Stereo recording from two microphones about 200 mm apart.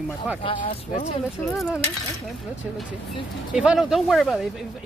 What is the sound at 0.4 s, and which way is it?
Speech, 25° left (ahead or behind).